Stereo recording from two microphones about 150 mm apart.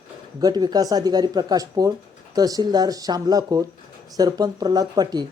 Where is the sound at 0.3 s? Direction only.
25° right (ahead or behind).